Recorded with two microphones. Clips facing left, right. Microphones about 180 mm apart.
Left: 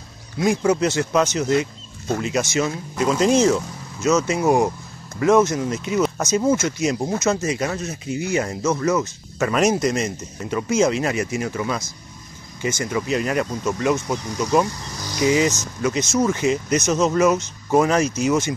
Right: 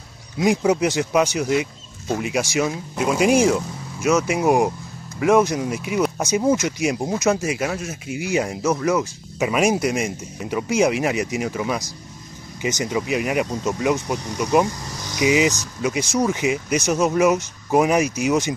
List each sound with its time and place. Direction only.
0.4 s speech: 15° right (ahead or behind)